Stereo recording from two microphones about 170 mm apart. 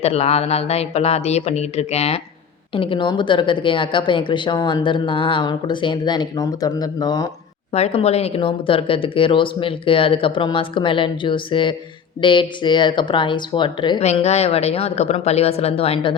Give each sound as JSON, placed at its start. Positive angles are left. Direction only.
{"t": 0.0, "sound": "a woman's voice", "side_deg": 40}
{"t": 7.7, "sound": "a woman's voice", "side_deg": 35}
{"t": 14.0, "sound": "speech", "side_deg": 40}